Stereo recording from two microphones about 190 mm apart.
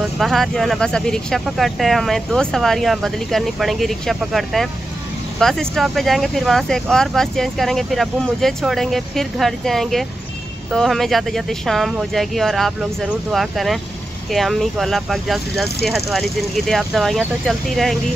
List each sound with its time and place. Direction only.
0.2 s speech: centre (ahead or behind)